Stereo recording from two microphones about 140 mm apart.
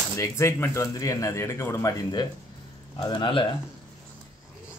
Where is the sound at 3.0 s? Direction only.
35° left (ahead or behind).